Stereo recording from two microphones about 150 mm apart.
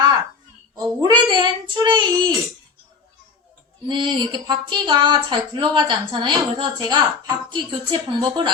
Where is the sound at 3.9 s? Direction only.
30° right (ahead or behind).